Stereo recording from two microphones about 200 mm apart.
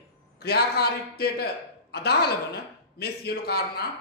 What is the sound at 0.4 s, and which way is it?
A man's voice, 55° left (ahead or behind).